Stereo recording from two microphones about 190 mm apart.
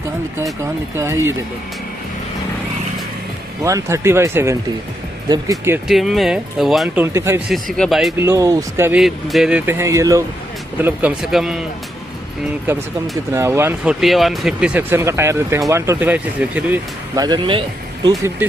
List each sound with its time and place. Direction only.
0.9 s speech: 15° right (ahead or behind)
3.6 s speech: 15° right (ahead or behind)
5.9 s speech: centre (ahead or behind)
7.2 s speech: 15° right (ahead or behind)
7.7 s speech: centre (ahead or behind)
8.2 s speech: 15° right (ahead or behind)
9.0 s speech: centre (ahead or behind)
13.3 s speech: 15° right (ahead or behind)
14.0 s speech: centre (ahead or behind)
17.2 s speech: 25° right (ahead or behind)
18.4 s speech: 10° right (ahead or behind)